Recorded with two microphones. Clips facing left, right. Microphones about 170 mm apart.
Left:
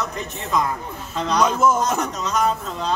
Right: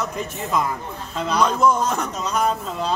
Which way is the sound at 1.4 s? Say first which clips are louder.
Even; 5° left (ahead or behind).